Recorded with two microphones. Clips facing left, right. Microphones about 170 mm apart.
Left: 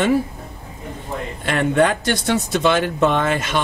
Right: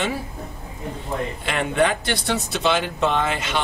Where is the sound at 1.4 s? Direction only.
45° left (ahead or behind).